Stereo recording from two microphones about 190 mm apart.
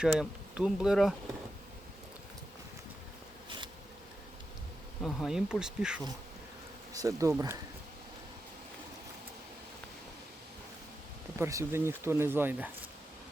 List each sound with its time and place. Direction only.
0.0 s speech: 5° right (ahead or behind)
4.9 s speech: centre (ahead or behind)
6.9 s speech: 15° right (ahead or behind)
11.3 s speech: 15° right (ahead or behind)